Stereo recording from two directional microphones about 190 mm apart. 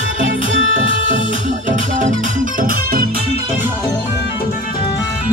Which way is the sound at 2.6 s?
50° right (ahead or behind).